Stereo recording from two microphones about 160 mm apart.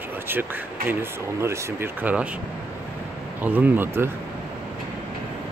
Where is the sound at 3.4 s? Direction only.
10° right (ahead or behind).